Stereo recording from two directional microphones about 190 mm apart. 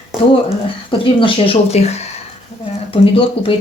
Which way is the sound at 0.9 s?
30° left (ahead or behind).